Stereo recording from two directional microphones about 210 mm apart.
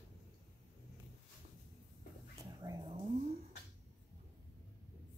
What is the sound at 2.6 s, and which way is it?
Dog, 20° right (ahead or behind).